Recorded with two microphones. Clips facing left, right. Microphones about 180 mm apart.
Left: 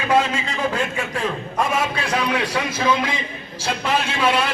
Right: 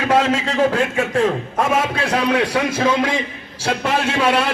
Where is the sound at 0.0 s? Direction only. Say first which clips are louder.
Right 3 dB; 90° right.